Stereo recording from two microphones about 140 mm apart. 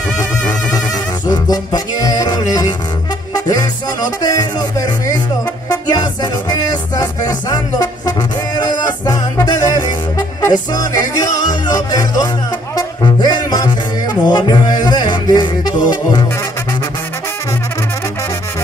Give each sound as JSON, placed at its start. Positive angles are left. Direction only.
{"t": 0.2, "sound": "music", "side_deg": 25}